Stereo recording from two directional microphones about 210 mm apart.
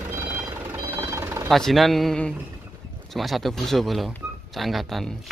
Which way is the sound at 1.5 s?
Centre (ahead or behind).